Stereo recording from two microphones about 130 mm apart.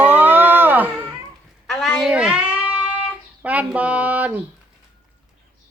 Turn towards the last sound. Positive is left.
turn(degrees=-10)  # may be behind; listen again after turning